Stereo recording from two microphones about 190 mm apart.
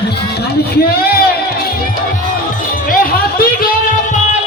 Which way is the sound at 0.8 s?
55° left (ahead or behind).